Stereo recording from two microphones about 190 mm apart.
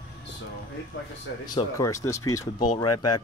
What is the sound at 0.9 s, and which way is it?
Speech, 90° left.